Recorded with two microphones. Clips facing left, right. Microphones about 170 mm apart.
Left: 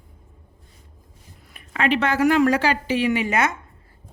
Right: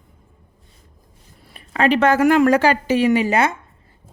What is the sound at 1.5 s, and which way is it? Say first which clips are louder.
A woman's voice: right 4 dB; 35° right (ahead or behind).